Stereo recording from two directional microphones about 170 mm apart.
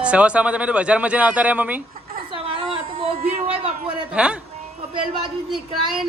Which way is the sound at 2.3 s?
35° right (ahead or behind).